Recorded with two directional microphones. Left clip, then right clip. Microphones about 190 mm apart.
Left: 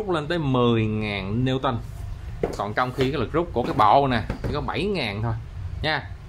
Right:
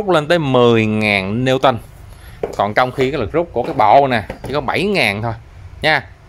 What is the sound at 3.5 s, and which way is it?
Speech, 15° right (ahead or behind).